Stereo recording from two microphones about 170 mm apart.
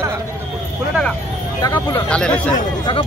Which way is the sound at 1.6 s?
25° left (ahead or behind).